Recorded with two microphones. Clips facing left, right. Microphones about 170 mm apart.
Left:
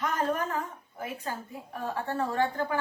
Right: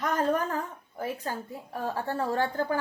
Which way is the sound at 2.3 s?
35° right (ahead or behind).